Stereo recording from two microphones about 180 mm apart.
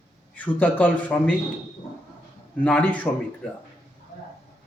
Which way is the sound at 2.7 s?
10° left (ahead or behind).